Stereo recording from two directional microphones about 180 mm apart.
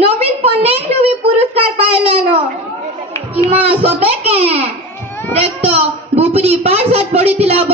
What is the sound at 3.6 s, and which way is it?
A woman's voice, 35° right (ahead or behind).